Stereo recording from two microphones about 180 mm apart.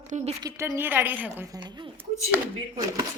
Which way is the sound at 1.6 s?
25° right (ahead or behind).